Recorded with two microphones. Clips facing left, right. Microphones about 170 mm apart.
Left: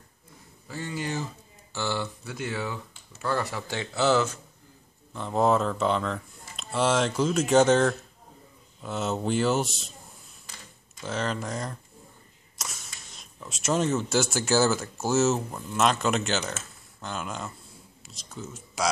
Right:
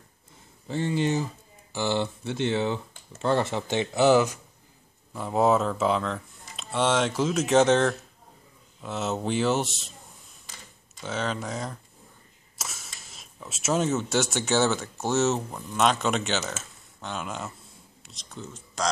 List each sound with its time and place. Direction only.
0.7 s speech: 25° right (ahead or behind); by 9.9 s centre (ahead or behind)
11.0 s speech: centre (ahead or behind)